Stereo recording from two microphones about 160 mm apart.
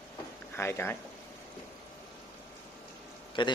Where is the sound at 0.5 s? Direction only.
15° left (ahead or behind).